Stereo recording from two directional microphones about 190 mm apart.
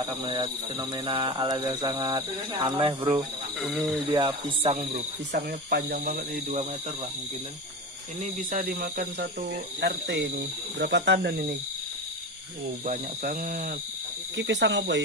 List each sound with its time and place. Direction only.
0.2 s speech: 25° right (ahead or behind)
4.6 s cricket: 35° right (ahead or behind)
5.7 s speech: 55° right (ahead or behind)
8.2 s speech: 45° right (ahead or behind)
13.2 s speech: 45° right (ahead or behind)
14.3 s speech: 65° right (ahead or behind)